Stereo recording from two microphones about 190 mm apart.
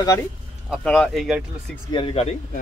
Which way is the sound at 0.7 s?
5° left (ahead or behind).